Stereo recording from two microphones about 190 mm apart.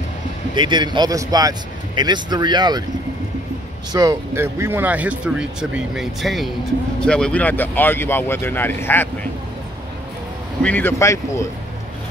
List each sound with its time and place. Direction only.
0.6 s speech: 25° right (ahead or behind)
3.9 s speech: 20° right (ahead or behind); by 9.1 s 10° left (ahead or behind)
10.6 s speech: 10° left (ahead or behind)